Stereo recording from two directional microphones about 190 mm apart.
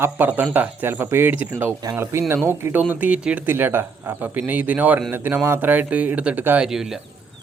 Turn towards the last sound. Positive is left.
turn(degrees=0)  # may be behind; listen again after turning